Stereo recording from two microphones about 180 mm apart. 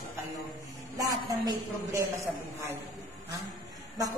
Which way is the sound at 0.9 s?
20° right (ahead or behind).